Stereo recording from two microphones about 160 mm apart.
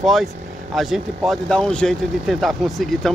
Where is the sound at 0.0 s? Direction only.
Centre (ahead or behind).